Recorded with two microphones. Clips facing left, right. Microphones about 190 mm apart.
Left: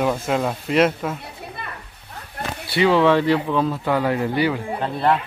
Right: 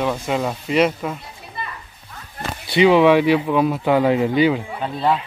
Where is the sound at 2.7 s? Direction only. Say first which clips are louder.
Right 3 dB; 15° right (ahead or behind).